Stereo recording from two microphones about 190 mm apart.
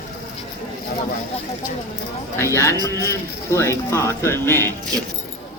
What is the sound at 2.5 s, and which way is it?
Speech, 15° left (ahead or behind).